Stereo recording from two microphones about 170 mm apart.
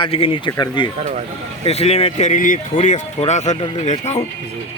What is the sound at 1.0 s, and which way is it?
Speech, 45° right (ahead or behind).